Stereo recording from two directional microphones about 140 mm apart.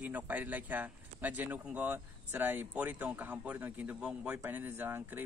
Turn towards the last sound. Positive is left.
turn(degrees=-15)  # may be behind; listen again after turning